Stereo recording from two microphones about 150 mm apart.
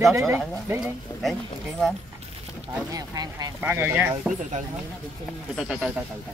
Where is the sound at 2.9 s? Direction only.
25° right (ahead or behind).